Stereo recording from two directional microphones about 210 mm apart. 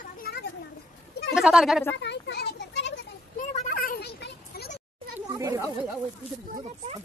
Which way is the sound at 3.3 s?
40° left (ahead or behind).